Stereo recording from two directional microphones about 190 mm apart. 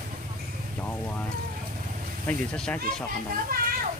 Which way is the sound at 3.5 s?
50° right (ahead or behind).